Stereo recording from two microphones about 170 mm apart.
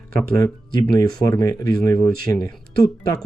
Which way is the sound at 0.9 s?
20° left (ahead or behind).